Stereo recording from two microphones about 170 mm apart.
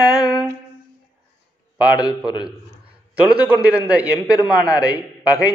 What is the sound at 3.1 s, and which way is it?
A man's voice, 5° right (ahead or behind).